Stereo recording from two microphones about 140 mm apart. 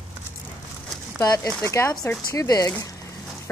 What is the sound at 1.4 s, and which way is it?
A woman's voice, 15° left (ahead or behind).